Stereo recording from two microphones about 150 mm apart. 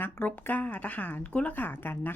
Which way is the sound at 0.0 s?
10° left (ahead or behind).